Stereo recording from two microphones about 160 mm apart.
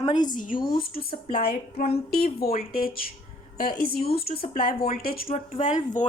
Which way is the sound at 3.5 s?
65° left (ahead or behind).